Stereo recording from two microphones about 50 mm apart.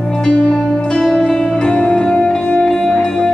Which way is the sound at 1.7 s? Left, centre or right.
Left.